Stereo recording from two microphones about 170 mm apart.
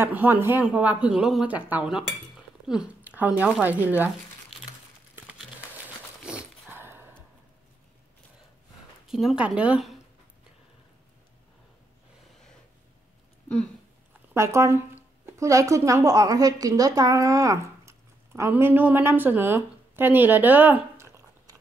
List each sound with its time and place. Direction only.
0.0 s speech: 10° right (ahead or behind)
5.1 s crumpling: 5° right (ahead or behind)
6.2 s a sound: 5° right (ahead or behind)
9.0 s speech: centre (ahead or behind)
14.3 s a woman's voice: 15° right (ahead or behind)